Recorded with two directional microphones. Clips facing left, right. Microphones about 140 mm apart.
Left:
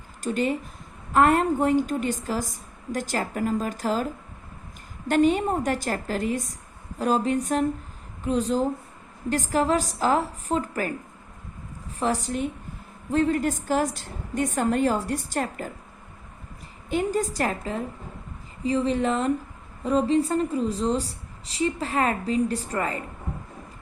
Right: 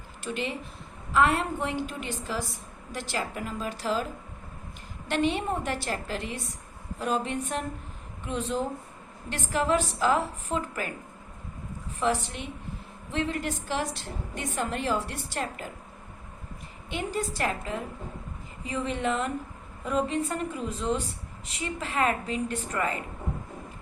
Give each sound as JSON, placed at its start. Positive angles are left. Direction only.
{"t": 0.2, "sound": "a woman's voice", "side_deg": 45}
{"t": 5.0, "sound": "a woman's voice", "side_deg": 45}
{"t": 11.9, "sound": "a woman's voice", "side_deg": 40}
{"t": 16.9, "sound": "a woman's voice", "side_deg": 45}